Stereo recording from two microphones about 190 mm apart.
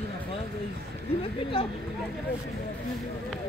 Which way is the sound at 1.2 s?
25° left (ahead or behind).